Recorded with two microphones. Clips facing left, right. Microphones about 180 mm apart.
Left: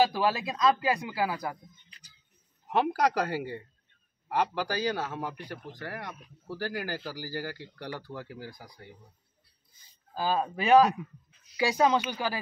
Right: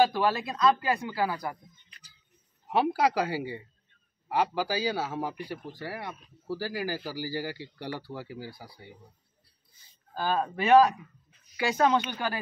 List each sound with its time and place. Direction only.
0.0 s speech: 15° left (ahead or behind)
2.7 s speech: 10° right (ahead or behind)
10.1 s speech: 15° left (ahead or behind)